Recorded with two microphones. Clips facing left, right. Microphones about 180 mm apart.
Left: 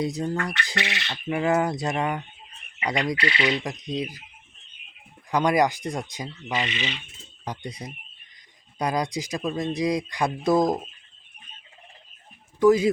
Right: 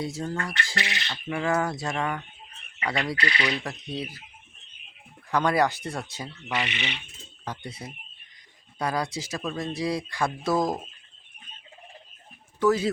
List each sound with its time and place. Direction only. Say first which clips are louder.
0.0 s speech: left 4 dB; 15° left (ahead or behind)
5.3 s speech: left 2 dB; 15° left (ahead or behind)
6.7 s speech: left 3 dB; 65° right (ahead or behind)
7.4 s speech: left 2 dB; 15° left (ahead or behind)
12.5 s speech: left 5 dB; 15° left (ahead or behind)